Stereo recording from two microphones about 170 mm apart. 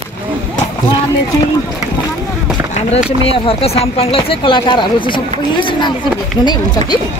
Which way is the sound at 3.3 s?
35° left (ahead or behind).